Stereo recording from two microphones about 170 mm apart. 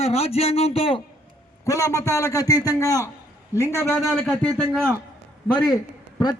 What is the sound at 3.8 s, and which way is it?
Speech, 10° left (ahead or behind).